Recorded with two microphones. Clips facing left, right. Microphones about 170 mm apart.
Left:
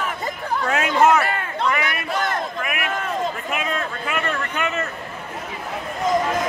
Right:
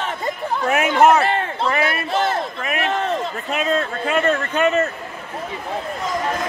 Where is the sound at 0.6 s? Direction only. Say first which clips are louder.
Right 3 dB; 20° right (ahead or behind).